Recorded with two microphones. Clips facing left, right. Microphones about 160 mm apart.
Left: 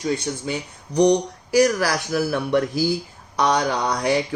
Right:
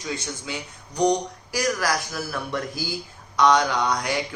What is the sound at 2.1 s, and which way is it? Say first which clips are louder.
Speech: left 9 dB; 60° left (ahead or behind).